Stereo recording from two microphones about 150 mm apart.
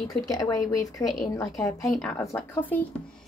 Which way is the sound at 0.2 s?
25° left (ahead or behind).